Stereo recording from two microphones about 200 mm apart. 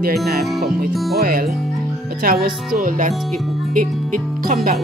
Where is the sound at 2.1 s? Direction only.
50° right (ahead or behind).